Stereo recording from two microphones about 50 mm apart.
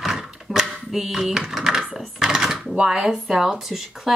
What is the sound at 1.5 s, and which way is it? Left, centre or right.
Typing, centre.